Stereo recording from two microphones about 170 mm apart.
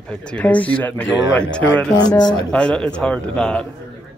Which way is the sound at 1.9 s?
25° left (ahead or behind).